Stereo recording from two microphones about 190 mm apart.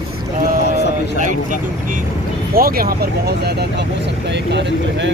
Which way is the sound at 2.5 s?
50° right (ahead or behind).